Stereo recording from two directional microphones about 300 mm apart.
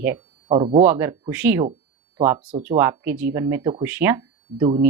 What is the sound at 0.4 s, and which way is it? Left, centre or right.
Speech, centre.